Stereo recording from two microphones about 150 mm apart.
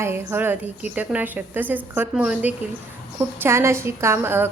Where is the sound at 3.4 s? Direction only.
15° right (ahead or behind).